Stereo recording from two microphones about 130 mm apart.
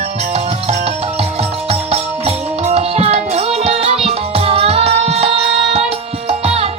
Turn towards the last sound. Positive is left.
turn(degrees=-50)  # may be behind; listen again after turning